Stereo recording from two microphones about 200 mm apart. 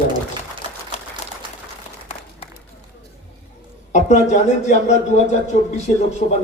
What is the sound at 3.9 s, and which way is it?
A man's voice, 35° left (ahead or behind).